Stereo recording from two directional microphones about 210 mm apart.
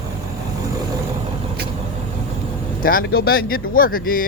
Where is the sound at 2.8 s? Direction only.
45° left (ahead or behind).